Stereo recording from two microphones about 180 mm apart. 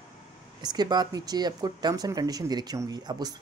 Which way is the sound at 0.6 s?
25° right (ahead or behind).